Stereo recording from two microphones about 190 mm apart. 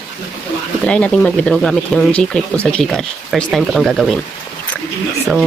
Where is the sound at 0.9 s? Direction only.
5° left (ahead or behind).